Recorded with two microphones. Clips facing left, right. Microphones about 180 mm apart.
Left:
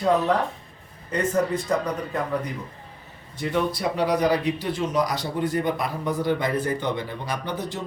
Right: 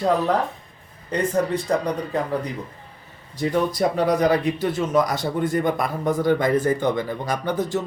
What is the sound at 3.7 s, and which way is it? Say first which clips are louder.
Speech: right 3 dB; 45° right (ahead or behind).